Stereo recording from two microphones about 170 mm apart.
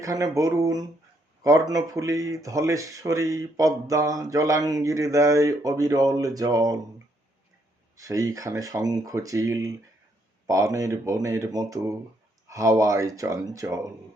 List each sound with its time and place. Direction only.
0.0 s speech: 20° right (ahead or behind)
7.9 s speech: 20° right (ahead or behind)